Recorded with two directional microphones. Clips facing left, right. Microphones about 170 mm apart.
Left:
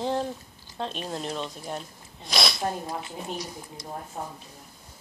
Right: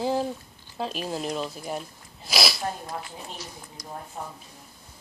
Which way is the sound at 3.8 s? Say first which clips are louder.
Left 1 dB; 25° left (ahead or behind).